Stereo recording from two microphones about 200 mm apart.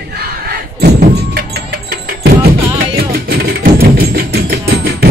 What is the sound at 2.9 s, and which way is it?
Music, 50° right (ahead or behind).